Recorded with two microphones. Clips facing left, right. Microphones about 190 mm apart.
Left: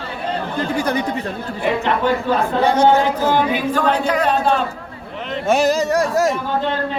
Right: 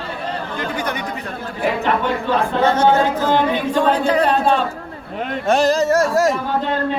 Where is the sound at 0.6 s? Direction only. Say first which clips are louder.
Left 6 dB; 30° left (ahead or behind).